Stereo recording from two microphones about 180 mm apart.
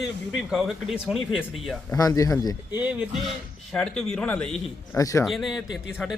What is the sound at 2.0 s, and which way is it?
Speech, 20° left (ahead or behind).